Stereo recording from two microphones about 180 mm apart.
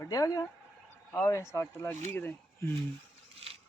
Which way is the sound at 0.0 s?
20° left (ahead or behind).